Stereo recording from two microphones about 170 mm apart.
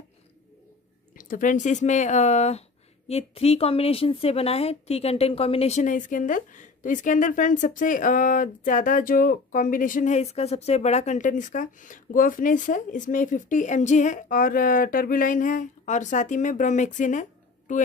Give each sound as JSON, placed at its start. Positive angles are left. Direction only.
{"t": 1.1, "sound": "speech", "side_deg": 50}